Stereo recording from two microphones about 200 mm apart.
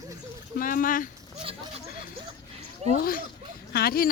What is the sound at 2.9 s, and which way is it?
Speech, 45° left (ahead or behind).